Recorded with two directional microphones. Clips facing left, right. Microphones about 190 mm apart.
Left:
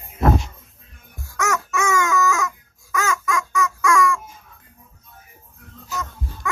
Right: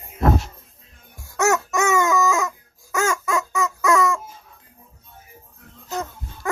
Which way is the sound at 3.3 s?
25° right (ahead or behind).